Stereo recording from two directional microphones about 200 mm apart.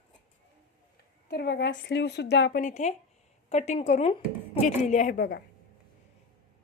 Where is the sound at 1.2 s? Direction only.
55° left (ahead or behind).